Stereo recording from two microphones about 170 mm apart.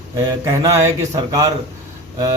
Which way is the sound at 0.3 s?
20° right (ahead or behind).